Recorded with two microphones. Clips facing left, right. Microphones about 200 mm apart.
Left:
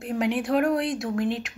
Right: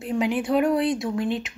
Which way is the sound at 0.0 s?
Centre (ahead or behind).